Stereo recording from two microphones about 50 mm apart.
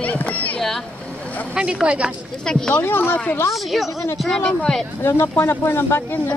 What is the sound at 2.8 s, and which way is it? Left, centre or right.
Speech, left.